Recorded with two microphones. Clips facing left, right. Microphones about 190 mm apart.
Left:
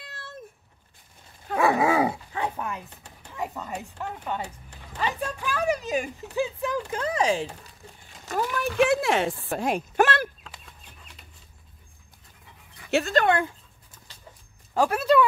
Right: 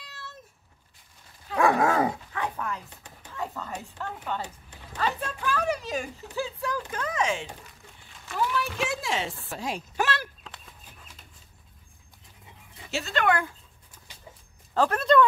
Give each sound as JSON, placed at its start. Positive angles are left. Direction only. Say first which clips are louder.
{"t": 0.0, "sound": "cat", "louder": "left 3 dB", "side_deg": 55}
{"t": 1.6, "sound": "dog", "louder": "left 1 dB", "side_deg": 5}
{"t": 2.3, "sound": "a sound", "louder": "left 2 dB", "side_deg": 25}
{"t": 3.3, "sound": "speech", "louder": "left 2 dB", "side_deg": 15}
{"t": 8.3, "sound": "speech", "louder": "left 1 dB", "side_deg": 45}
{"t": 10.5, "sound": "chicken", "louder": "even", "side_deg": 0}
{"t": 13.1, "sound": "speech", "louder": "left 1 dB", "side_deg": 30}
{"t": 14.7, "sound": "speech", "louder": "left 1 dB", "side_deg": 10}